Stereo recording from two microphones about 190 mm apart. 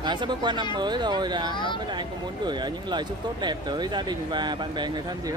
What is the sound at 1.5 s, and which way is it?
Speech, 25° left (ahead or behind).